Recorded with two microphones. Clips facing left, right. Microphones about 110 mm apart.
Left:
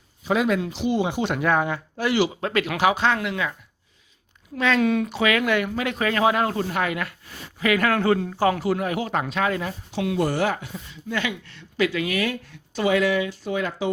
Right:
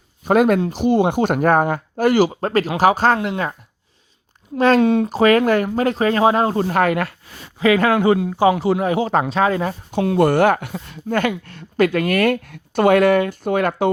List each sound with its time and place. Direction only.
0.3 s speech: 50° right (ahead or behind)
4.5 s speech: 40° right (ahead or behind)
4.8 s speech: 30° right (ahead or behind)
6.7 s speech: 50° right (ahead or behind)
7.6 s a man's voice: 25° right (ahead or behind)
7.9 s a man's voice: 15° right (ahead or behind); by 10.2 s 40° right (ahead or behind)
10.2 s speech: 55° right (ahead or behind)